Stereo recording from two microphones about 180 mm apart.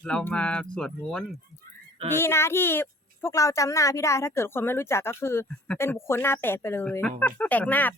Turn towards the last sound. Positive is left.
turn(degrees=10)  # may be behind; listen again after turning